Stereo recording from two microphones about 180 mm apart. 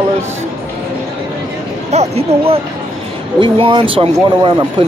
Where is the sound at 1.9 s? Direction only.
35° right (ahead or behind).